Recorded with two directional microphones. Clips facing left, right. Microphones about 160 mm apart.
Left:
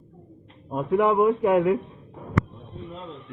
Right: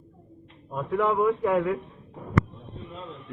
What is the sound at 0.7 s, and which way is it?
Speech, 20° left (ahead or behind).